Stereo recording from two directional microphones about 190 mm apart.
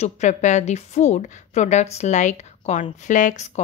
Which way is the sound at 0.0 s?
40° left (ahead or behind).